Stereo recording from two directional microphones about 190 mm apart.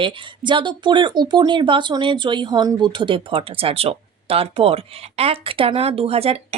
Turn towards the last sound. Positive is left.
turn(degrees=-30)  # may be behind; listen again after turning